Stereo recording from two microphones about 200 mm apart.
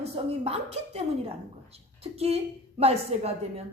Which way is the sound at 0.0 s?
30° right (ahead or behind).